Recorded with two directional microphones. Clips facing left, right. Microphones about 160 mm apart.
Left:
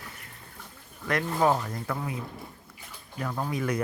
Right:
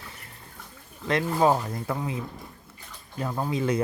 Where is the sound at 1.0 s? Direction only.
25° right (ahead or behind).